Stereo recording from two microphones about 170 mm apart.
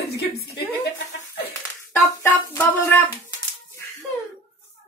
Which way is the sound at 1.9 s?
15° left (ahead or behind).